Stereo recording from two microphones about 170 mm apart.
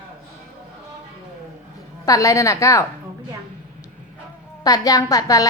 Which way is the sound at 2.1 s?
20° left (ahead or behind).